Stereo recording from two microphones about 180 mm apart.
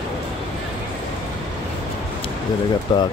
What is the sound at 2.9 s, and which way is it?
Speech, 25° left (ahead or behind).